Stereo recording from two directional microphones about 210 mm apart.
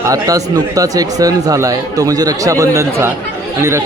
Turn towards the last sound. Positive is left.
turn(degrees=-15)  # may be behind; listen again after turning